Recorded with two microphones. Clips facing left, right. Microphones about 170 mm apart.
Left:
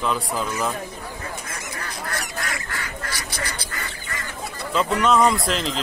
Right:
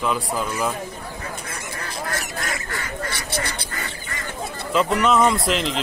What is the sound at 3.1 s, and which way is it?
Duck, 25° right (ahead or behind).